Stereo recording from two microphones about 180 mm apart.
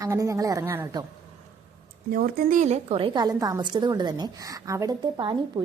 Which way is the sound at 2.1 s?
50° right (ahead or behind).